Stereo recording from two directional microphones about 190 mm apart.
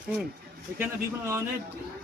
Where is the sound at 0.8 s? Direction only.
15° right (ahead or behind).